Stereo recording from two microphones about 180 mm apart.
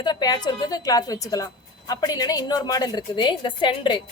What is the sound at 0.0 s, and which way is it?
A woman's voice, 20° left (ahead or behind).